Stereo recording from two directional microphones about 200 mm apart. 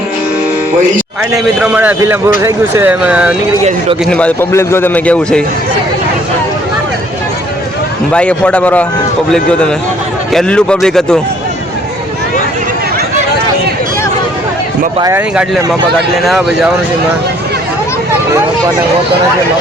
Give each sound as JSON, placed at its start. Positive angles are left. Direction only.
{"t": 1.6, "sound": "speech", "side_deg": -5}
{"t": 3.6, "sound": "a man's voice", "side_deg": -30}
{"t": 4.0, "sound": "a man's voice", "side_deg": 5}
{"t": 8.1, "sound": "a man's voice", "side_deg": 5}
{"t": 14.9, "sound": "speech", "side_deg": -15}
{"t": 16.2, "sound": "speech", "side_deg": 0}